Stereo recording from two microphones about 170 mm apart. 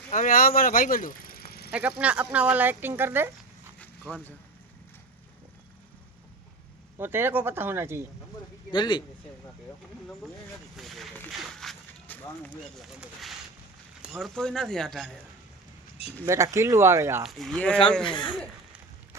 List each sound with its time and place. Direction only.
0.1 s speech: 50° left (ahead or behind)
1.7 s speech: 10° right (ahead or behind)
3.8 s a sound: 10° left (ahead or behind)
7.0 s speech: 15° right (ahead or behind)
8.7 s speech: 25° left (ahead or behind)
10.8 s a sound: centre (ahead or behind)
12.8 s speech: centre (ahead or behind)
16.2 s speech: 15° right (ahead or behind)
17.2 s speech: centre (ahead or behind)
18.0 s speech: 30° left (ahead or behind)